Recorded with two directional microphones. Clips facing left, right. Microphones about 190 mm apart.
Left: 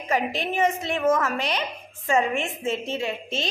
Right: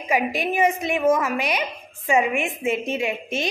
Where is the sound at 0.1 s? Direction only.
10° right (ahead or behind).